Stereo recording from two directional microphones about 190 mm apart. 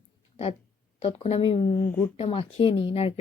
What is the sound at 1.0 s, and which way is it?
Speech, 30° left (ahead or behind).